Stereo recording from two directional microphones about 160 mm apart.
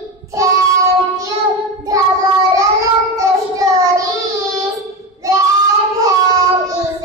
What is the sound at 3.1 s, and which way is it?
Child singing, 20° right (ahead or behind).